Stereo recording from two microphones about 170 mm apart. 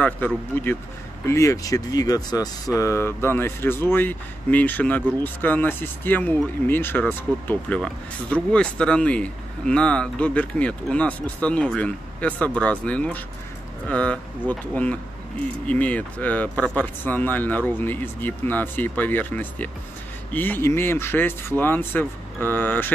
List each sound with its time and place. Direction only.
0.5 s speech: 15° left (ahead or behind)